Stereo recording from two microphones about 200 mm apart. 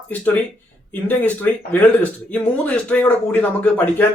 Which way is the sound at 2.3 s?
5° left (ahead or behind).